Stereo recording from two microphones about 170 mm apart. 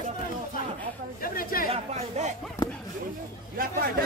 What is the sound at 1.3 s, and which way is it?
Speech, 55° left (ahead or behind).